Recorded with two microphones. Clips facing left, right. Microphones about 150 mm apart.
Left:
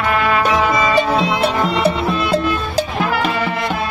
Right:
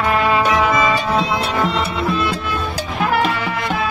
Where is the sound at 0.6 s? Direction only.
Centre (ahead or behind).